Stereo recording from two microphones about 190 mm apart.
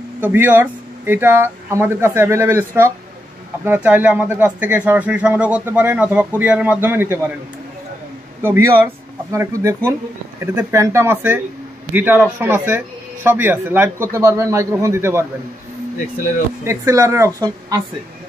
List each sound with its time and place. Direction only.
0.2 s speech: 10° right (ahead or behind)
8.4 s speech: 10° right (ahead or behind)
16.6 s speech: 15° right (ahead or behind)